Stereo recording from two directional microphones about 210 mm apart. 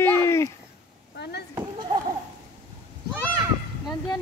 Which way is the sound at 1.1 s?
50° left (ahead or behind).